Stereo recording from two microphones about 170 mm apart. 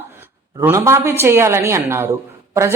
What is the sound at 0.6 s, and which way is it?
A woman's voice, 15° right (ahead or behind).